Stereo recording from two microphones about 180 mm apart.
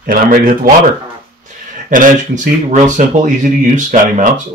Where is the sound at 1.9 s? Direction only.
45° right (ahead or behind).